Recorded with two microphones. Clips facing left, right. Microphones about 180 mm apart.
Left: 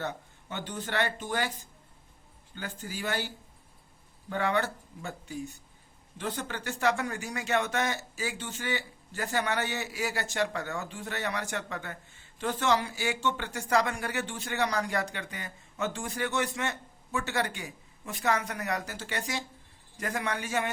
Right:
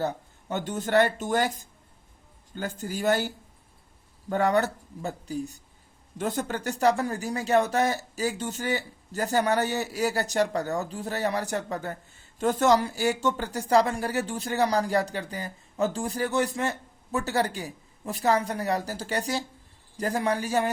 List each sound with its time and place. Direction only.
0.0 s speech: 40° right (ahead or behind)